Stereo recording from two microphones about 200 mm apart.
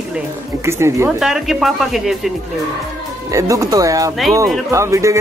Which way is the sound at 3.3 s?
15° right (ahead or behind).